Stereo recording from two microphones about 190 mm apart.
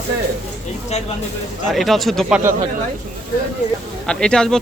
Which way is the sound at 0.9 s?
35° left (ahead or behind).